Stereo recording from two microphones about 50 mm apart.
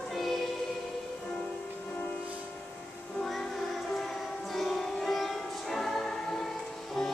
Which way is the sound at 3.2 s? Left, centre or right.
Centre.